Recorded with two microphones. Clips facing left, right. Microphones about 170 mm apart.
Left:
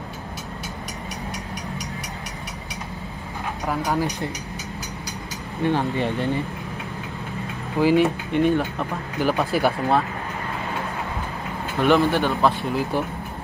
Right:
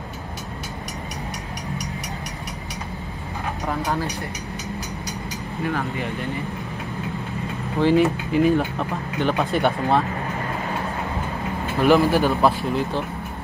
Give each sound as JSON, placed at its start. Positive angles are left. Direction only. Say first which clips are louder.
{"t": 3.6, "sound": "speech", "louder": "left 1 dB", "side_deg": 0}
{"t": 5.6, "sound": "speech", "louder": "left 4 dB", "side_deg": 30}
{"t": 7.8, "sound": "speech", "louder": "even", "side_deg": 0}
{"t": 11.8, "sound": "speech", "louder": "right 2 dB", "side_deg": -5}